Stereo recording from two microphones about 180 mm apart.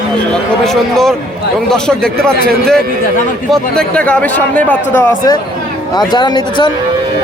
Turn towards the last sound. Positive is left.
turn(degrees=25)  # may be behind; listen again after turning